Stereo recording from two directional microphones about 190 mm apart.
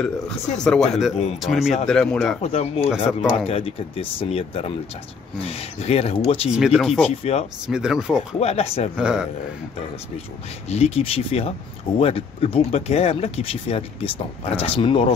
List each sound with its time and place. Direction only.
0.6 s speech: 5° left (ahead or behind)
2.4 s speech: 35° left (ahead or behind)
6.5 s speech: centre (ahead or behind)
7.0 s speech: 35° left (ahead or behind)
7.6 s speech: 5° right (ahead or behind)
8.4 s speech: 30° left (ahead or behind)
8.9 s speech: 5° right (ahead or behind)
10.7 s speech: 30° left (ahead or behind)